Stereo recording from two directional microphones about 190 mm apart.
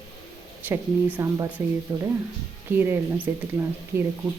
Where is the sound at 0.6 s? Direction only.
10° right (ahead or behind).